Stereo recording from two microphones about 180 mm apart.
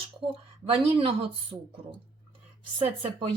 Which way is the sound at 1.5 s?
15° right (ahead or behind).